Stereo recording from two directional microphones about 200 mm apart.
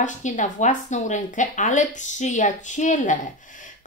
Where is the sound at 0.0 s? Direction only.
40° left (ahead or behind).